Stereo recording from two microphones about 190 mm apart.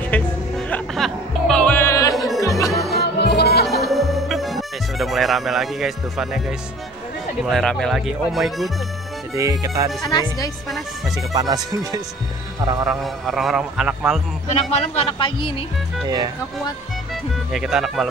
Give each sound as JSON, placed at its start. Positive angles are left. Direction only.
{"t": 0.1, "sound": "music", "side_deg": 10}
{"t": 2.1, "sound": "music", "side_deg": 0}
{"t": 2.4, "sound": "music", "side_deg": 15}
{"t": 3.0, "sound": "music", "side_deg": 60}
{"t": 3.6, "sound": "music", "side_deg": 0}
{"t": 7.4, "sound": "a man's voice", "side_deg": 0}
{"t": 9.3, "sound": "speech", "side_deg": -15}
{"t": 10.0, "sound": "a man's voice", "side_deg": 20}
{"t": 11.3, "sound": "music", "side_deg": -20}
{"t": 12.8, "sound": "a man's voice", "side_deg": 0}
{"t": 14.5, "sound": "a man's voice", "side_deg": 35}
{"t": 17.1, "sound": "a man's voice", "side_deg": 0}